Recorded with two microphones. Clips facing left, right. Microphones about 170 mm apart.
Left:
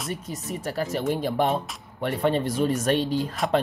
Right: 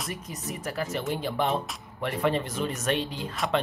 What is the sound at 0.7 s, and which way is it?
Speech, 35° left (ahead or behind).